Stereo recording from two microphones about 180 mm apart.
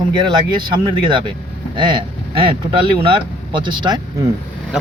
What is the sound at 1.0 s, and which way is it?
Speech, 25° right (ahead or behind).